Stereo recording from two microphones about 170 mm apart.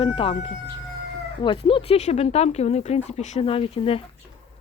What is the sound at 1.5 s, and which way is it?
Speech, 30° left (ahead or behind).